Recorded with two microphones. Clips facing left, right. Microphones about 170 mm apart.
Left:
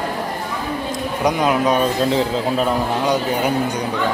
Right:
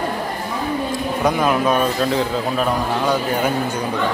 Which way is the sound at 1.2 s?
20° left (ahead or behind).